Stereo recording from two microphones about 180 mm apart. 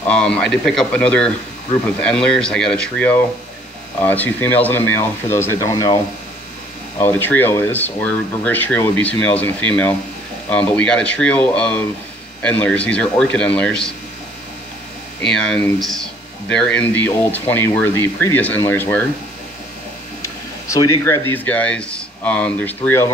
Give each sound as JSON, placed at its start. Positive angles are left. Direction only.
{"t": 0.0, "sound": "speech", "side_deg": 5}
{"t": 7.0, "sound": "speech", "side_deg": 10}
{"t": 15.2, "sound": "speech", "side_deg": 5}
{"t": 20.7, "sound": "speech", "side_deg": 20}